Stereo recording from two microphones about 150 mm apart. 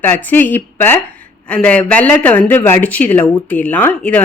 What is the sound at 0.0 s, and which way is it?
Speech, 15° left (ahead or behind).